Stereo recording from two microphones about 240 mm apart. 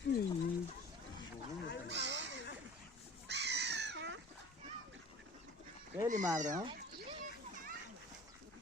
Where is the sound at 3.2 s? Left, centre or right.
Right.